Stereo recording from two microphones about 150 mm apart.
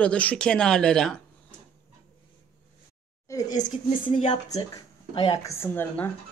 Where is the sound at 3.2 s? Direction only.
25° left (ahead or behind).